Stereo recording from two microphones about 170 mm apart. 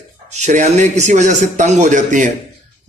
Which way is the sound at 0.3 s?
45° right (ahead or behind).